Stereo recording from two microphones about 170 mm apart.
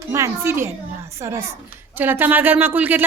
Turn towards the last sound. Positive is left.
turn(degrees=-10)  # may be behind; listen again after turning